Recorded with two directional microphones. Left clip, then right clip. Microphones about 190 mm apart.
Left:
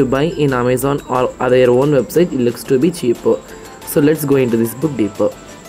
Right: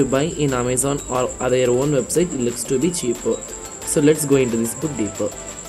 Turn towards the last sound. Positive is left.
turn(degrees=5)  # may be behind; listen again after turning